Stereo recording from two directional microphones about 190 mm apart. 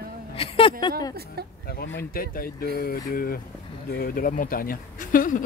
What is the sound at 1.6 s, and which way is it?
Speech, 55° left (ahead or behind).